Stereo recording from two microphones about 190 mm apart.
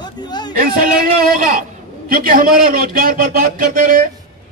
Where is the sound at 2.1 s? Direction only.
50° right (ahead or behind).